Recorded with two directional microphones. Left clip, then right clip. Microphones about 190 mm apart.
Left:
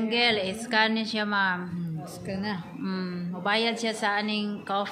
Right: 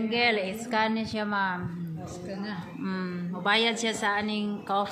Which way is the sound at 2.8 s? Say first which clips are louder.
Even; 10° left (ahead or behind).